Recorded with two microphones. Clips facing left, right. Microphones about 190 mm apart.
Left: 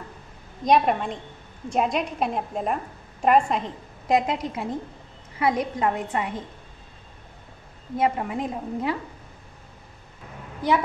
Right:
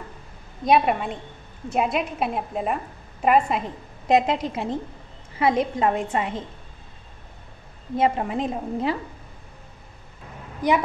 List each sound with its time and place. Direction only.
0.7 s a woman's voice: 5° right (ahead or behind)
4.1 s a woman's voice: 25° right (ahead or behind)
8.0 s a woman's voice: 25° right (ahead or behind)